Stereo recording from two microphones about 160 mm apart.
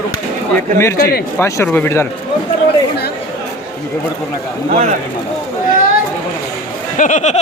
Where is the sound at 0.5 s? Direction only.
15° left (ahead or behind).